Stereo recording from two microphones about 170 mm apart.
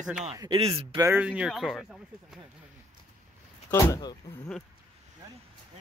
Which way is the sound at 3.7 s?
20° left (ahead or behind).